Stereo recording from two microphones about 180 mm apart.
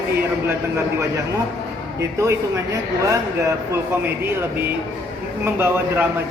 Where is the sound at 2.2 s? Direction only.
15° right (ahead or behind).